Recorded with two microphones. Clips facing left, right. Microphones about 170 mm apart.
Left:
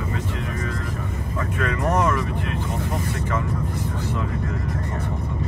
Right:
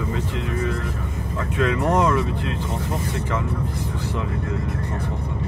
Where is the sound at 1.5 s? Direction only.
20° right (ahead or behind).